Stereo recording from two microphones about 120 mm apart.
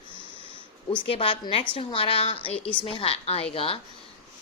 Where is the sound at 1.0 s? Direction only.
50° left (ahead or behind).